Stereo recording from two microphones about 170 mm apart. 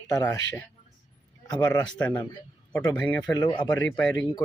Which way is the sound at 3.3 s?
25° left (ahead or behind).